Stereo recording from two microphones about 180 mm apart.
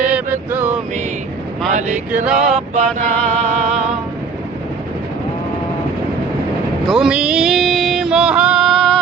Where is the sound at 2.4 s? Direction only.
40° right (ahead or behind).